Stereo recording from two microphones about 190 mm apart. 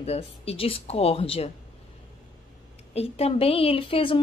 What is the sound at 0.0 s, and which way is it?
A woman's voice, 30° left (ahead or behind).